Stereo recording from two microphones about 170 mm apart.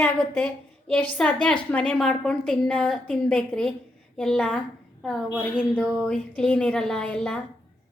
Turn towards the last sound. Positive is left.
turn(degrees=5)  # may be behind; listen again after turning